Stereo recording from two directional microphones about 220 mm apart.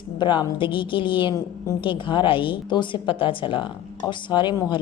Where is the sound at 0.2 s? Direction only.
20° left (ahead or behind).